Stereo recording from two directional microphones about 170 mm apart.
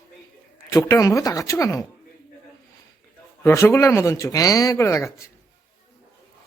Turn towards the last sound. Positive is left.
turn(degrees=15)  # may be behind; listen again after turning